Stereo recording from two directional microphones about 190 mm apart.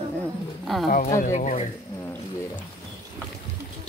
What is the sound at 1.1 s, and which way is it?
Speech, 40° left (ahead or behind).